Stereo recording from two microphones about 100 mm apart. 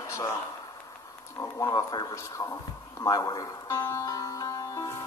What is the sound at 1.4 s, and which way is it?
Speech, 35° left (ahead or behind).